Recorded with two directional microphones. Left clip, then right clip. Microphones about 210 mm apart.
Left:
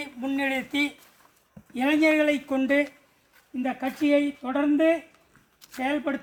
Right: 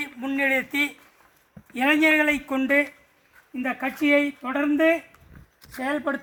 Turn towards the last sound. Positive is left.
turn(degrees=0)  # may be behind; listen again after turning